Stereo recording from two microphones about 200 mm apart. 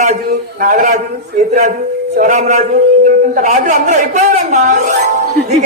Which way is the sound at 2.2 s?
40° right (ahead or behind).